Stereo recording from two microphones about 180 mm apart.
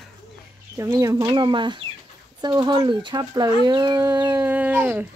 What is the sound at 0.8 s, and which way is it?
Speech, 15° right (ahead or behind).